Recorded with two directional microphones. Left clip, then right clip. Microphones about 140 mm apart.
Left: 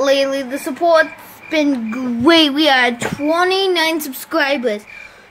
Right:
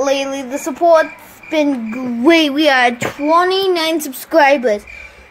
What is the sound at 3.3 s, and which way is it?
Speech, 15° left (ahead or behind).